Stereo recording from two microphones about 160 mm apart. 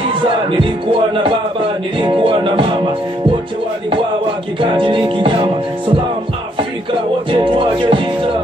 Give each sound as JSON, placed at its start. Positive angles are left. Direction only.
{"t": 0.1, "sound": "music", "side_deg": -35}
{"t": 2.0, "sound": "music", "side_deg": -30}
{"t": 4.6, "sound": "music", "side_deg": -35}
{"t": 7.2, "sound": "music", "side_deg": -30}